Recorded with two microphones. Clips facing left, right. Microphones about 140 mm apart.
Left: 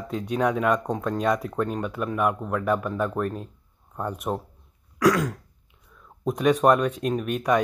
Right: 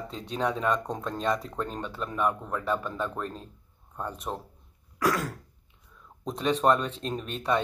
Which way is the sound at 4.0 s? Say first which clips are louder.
Left 6 dB; 15° left (ahead or behind).